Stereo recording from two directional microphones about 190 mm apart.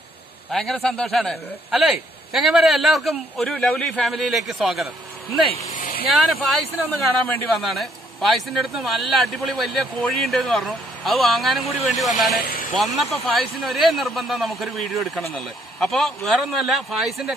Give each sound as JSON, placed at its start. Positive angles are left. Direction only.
{"t": 0.5, "sound": "speech", "side_deg": 0}
{"t": 5.7, "sound": "a sound", "side_deg": 45}
{"t": 6.0, "sound": "speech", "side_deg": 0}
{"t": 12.4, "sound": "speech", "side_deg": 50}
{"t": 12.7, "sound": "speech", "side_deg": 0}